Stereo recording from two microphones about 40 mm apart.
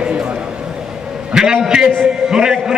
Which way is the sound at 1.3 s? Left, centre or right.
Centre.